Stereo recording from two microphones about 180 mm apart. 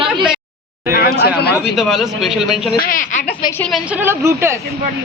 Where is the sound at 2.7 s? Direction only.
55° left (ahead or behind).